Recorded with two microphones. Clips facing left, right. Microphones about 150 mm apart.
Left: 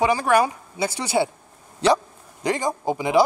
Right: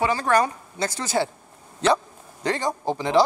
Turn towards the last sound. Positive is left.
turn(degrees=10)  # may be behind; listen again after turning